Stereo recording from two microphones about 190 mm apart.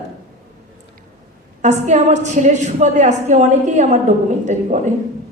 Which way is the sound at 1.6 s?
40° right (ahead or behind).